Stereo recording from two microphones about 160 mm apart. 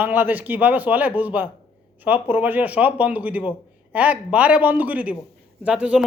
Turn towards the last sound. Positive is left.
turn(degrees=-5)  # may be behind; listen again after turning